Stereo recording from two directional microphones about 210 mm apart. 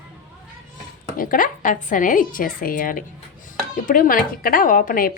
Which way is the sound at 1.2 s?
40° left (ahead or behind).